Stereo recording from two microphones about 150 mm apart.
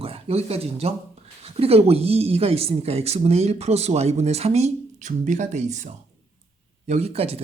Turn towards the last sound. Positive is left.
turn(degrees=-40)  # may be behind; listen again after turning